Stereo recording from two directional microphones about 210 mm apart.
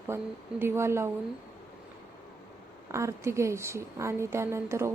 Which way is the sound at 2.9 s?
15° right (ahead or behind).